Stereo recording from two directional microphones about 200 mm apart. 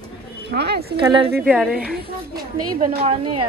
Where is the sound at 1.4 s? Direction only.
5° right (ahead or behind).